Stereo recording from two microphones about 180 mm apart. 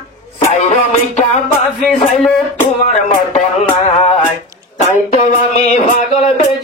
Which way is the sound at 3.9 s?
40° left (ahead or behind).